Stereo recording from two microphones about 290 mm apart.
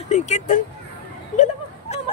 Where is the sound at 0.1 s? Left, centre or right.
Left.